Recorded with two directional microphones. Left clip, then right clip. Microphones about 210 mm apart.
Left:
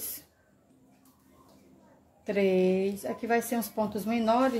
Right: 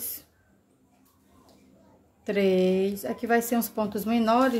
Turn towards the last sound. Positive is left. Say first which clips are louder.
# right 3 dB
turn(degrees=-15)  # may be behind; listen again after turning